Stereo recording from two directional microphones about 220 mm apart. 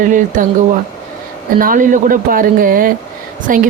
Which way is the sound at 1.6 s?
40° right (ahead or behind).